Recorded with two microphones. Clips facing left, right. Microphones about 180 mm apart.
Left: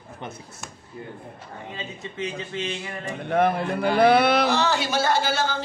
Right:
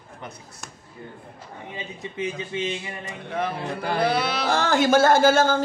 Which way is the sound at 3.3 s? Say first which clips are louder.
Left 6 dB; 55° left (ahead or behind).